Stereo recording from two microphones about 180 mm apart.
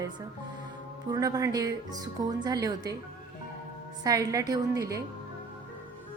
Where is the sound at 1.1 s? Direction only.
20° right (ahead or behind).